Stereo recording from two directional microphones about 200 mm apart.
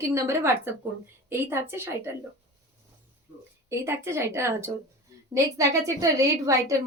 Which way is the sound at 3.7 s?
15° right (ahead or behind).